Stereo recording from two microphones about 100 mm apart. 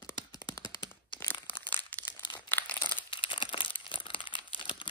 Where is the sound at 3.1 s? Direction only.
55° left (ahead or behind).